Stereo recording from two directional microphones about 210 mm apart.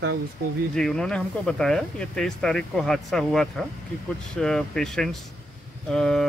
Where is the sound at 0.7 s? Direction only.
5° left (ahead or behind).